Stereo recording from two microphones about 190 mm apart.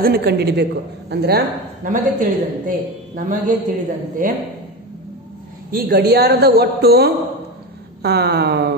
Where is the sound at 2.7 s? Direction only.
45° right (ahead or behind).